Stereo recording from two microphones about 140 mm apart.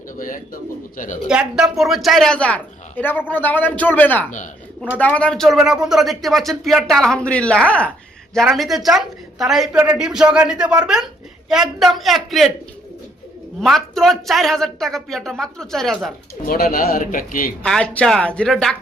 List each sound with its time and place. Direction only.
0.2 s speech: 75° left (ahead or behind)
1.3 s a woman's voice: 5° right (ahead or behind)
13.6 s speech: 5° left (ahead or behind)
16.5 s a man's voice: 90° left
17.6 s speech: 5° left (ahead or behind)